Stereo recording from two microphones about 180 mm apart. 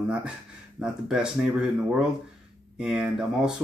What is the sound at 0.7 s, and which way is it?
Speech, 5° right (ahead or behind).